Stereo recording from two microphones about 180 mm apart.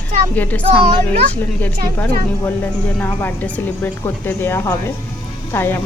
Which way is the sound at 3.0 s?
10° left (ahead or behind).